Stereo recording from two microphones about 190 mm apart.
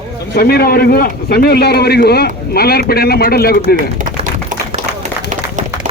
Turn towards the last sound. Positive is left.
turn(degrees=-40)  # may be behind; listen again after turning